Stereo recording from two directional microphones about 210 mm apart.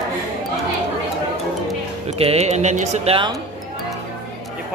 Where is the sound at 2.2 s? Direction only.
30° right (ahead or behind).